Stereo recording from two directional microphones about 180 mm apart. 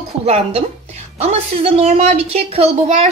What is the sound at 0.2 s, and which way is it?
A woman's voice, 35° right (ahead or behind).